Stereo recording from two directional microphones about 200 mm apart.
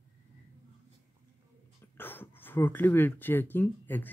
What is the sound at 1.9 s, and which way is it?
Speech, 10° left (ahead or behind).